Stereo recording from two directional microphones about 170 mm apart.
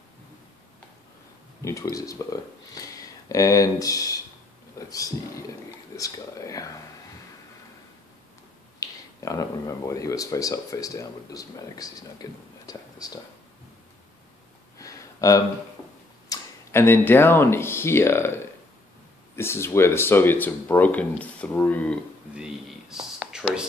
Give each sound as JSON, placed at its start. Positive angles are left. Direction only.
{"t": 1.6, "sound": "speech", "side_deg": 20}
{"t": 8.7, "sound": "speech", "side_deg": 20}
{"t": 14.8, "sound": "a sound", "side_deg": 20}
{"t": 16.3, "sound": "speech", "side_deg": 15}
{"t": 22.4, "sound": "whispering", "side_deg": -5}